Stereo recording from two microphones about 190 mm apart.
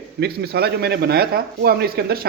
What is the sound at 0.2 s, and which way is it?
Speech, 60° right (ahead or behind).